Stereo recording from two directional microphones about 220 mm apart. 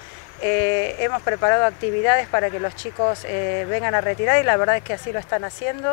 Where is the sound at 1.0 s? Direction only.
20° left (ahead or behind).